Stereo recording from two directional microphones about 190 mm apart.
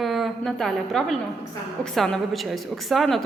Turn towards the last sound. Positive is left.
turn(degrees=0)  # may be behind; listen again after turning